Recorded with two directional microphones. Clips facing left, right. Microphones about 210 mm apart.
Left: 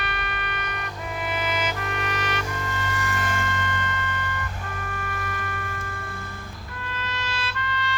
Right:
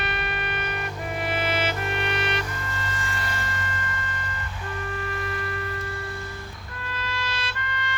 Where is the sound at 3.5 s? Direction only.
30° right (ahead or behind).